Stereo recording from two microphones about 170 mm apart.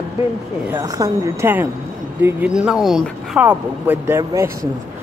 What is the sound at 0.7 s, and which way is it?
Speech, 20° right (ahead or behind).